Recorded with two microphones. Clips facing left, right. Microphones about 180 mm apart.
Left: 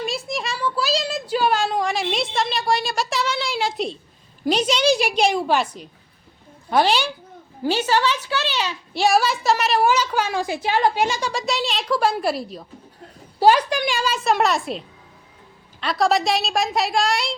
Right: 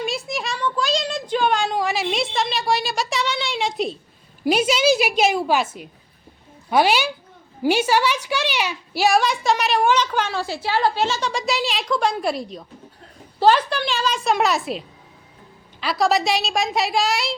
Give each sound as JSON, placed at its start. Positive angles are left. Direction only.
{"t": 0.0, "sound": "a sound", "side_deg": 0}
{"t": 4.4, "sound": "a woman's voice", "side_deg": -10}
{"t": 11.3, "sound": "a woman's voice", "side_deg": 0}